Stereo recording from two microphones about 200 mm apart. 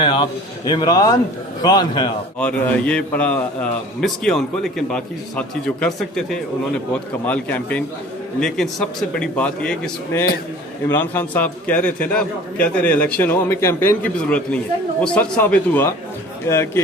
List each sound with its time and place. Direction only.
0.0 s a man's voice: 25° left (ahead or behind)
2.4 s a man's voice: 5° left (ahead or behind)